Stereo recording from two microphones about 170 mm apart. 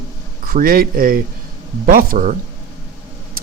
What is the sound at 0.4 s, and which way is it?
Speech, 55° right (ahead or behind).